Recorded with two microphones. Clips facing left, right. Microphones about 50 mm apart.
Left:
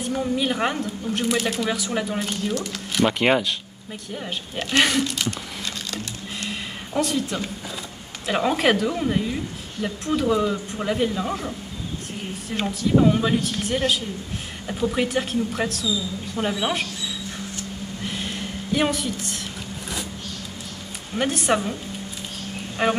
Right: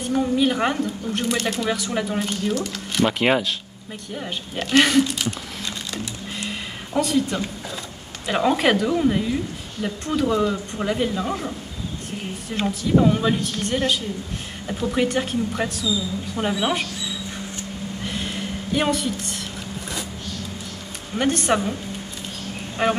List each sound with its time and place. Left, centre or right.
0.0 s speech: centre
6.5 s a sound: centre
8.3 s speech: centre
18.0 s a sound: centre
21.2 s speech: centre
22.8 s speech: centre